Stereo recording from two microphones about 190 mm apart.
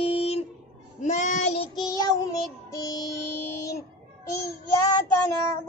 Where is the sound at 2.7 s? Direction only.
20° left (ahead or behind).